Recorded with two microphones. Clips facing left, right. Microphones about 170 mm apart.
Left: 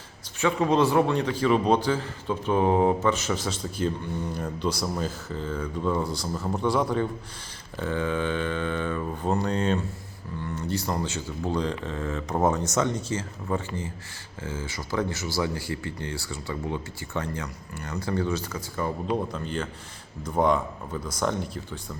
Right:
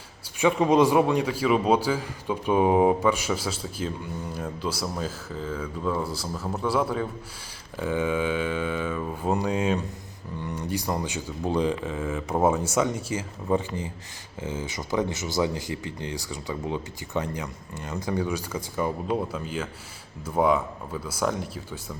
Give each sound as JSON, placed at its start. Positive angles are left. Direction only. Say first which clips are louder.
{"t": 0.3, "sound": "a man's voice", "louder": "right 3 dB", "side_deg": -15}